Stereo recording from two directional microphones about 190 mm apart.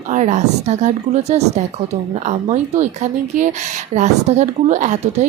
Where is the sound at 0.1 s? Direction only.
40° right (ahead or behind).